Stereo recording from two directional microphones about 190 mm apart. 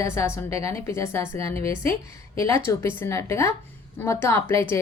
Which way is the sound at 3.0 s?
15° left (ahead or behind).